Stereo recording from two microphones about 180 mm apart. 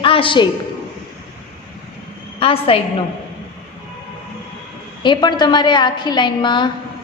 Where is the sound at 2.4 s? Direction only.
30° left (ahead or behind).